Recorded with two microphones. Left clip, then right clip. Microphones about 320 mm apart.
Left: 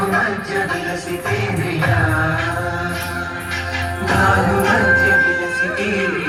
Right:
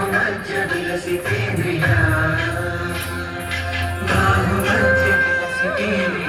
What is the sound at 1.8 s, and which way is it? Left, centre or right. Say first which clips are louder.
Music: left 1 dB; centre.